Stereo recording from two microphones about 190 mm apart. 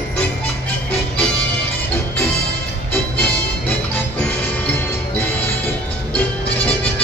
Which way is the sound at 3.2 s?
10° left (ahead or behind).